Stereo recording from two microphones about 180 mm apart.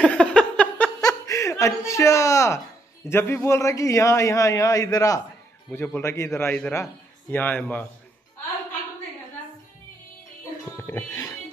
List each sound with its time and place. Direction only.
0.0 s chuckle: 5° left (ahead or behind)
3.1 s a man's voice: 15° left (ahead or behind)
10.8 s music: 15° left (ahead or behind)